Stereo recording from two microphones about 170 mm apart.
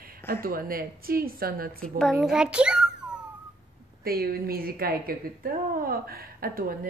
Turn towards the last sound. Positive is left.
turn(degrees=-60)  # may be behind; listen again after turning